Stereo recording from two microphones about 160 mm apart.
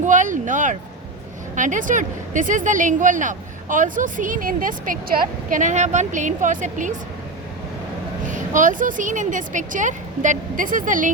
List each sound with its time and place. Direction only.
0.0 s a sound: 50° right (ahead or behind)
1.5 s speech: 50° right (ahead or behind)
8.3 s speech: 50° right (ahead or behind)